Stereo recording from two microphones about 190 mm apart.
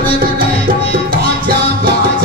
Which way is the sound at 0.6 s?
50° right (ahead or behind).